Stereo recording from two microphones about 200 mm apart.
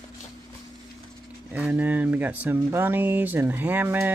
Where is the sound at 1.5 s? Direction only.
10° right (ahead or behind).